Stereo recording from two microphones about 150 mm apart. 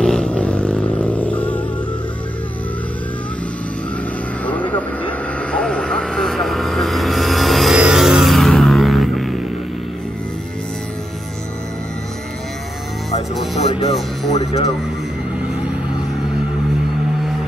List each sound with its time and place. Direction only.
0.0 s vehicle: 5° left (ahead or behind)
5.5 s vehicle: 5° left (ahead or behind)
13.6 s music: 45° left (ahead or behind)
14.3 s a sound: 45° left (ahead or behind)